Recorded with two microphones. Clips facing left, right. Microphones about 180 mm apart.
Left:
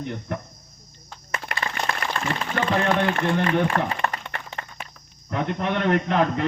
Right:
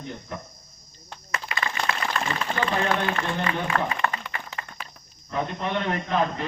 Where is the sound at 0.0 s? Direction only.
65° left (ahead or behind).